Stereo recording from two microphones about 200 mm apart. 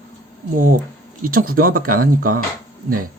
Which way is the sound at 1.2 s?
45° right (ahead or behind).